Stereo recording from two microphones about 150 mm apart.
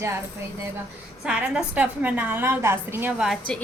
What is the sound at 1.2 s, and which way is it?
A woman's voice, 5° right (ahead or behind).